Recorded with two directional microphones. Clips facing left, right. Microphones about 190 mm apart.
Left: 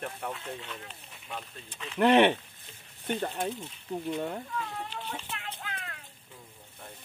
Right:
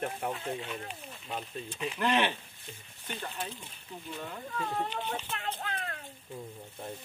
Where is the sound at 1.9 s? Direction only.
60° left (ahead or behind).